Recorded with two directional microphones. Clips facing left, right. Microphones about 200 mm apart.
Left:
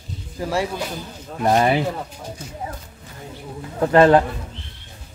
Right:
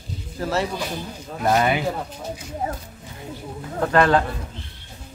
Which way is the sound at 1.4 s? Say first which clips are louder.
Left 2 dB; 35° left (ahead or behind).